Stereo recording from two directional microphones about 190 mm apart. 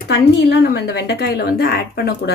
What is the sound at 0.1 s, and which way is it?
A woman's voice, 65° left (ahead or behind).